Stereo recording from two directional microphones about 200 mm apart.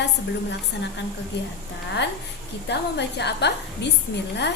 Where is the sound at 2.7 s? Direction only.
60° left (ahead or behind).